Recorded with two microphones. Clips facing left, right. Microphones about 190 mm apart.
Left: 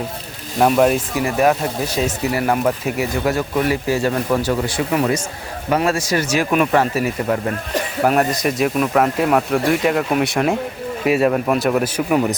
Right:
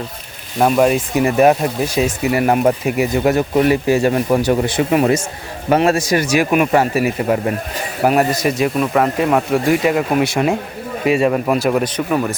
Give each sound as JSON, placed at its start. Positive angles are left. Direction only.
{"t": 0.6, "sound": "speech", "side_deg": 0}
{"t": 1.1, "sound": "speech", "side_deg": -20}
{"t": 2.0, "sound": "speech", "side_deg": -10}